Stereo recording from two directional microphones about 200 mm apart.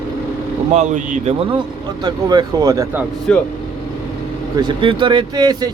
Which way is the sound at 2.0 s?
20° right (ahead or behind).